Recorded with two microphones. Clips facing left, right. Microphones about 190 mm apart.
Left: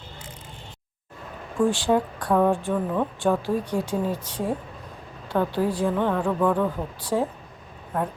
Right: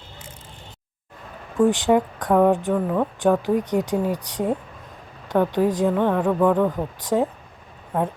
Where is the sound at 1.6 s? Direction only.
20° right (ahead or behind).